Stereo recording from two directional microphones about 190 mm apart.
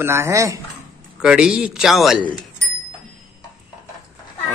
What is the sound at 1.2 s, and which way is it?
Speech, 5° right (ahead or behind).